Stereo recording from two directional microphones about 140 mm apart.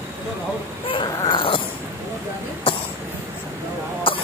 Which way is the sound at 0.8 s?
35° left (ahead or behind).